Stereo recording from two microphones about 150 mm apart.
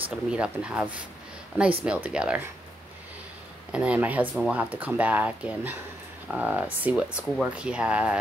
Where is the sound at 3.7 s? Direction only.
10° right (ahead or behind).